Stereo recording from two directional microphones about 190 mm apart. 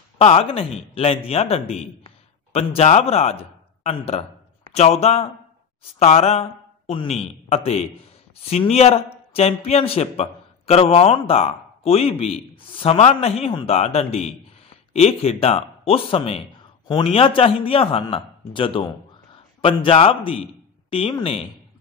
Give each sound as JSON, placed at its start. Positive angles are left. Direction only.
{"t": 0.2, "sound": "a man's voice", "side_deg": 35}